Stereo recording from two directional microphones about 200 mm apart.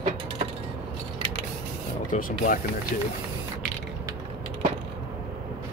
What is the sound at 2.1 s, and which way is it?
Speech, 40° left (ahead or behind).